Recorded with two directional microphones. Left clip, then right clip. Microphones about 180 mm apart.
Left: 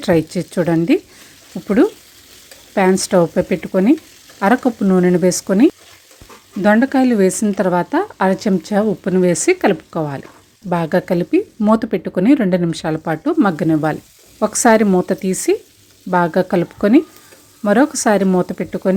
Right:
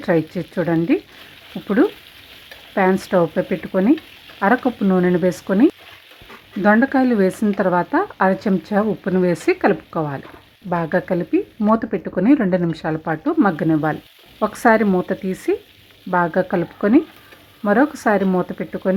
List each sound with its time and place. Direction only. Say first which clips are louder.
0.0 s speech: left 3 dB; 35° left (ahead or behind)